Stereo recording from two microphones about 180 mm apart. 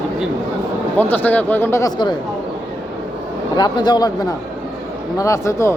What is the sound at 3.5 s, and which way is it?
A man's voice, 25° left (ahead or behind).